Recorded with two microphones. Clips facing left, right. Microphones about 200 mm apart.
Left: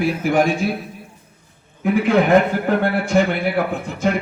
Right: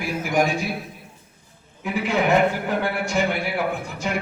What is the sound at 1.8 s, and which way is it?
A man's voice, 55° left (ahead or behind).